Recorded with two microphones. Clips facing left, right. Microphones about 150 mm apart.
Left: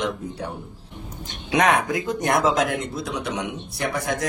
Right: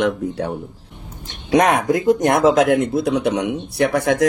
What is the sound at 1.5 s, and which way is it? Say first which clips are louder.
Speech: right 5 dB; 50° right (ahead or behind).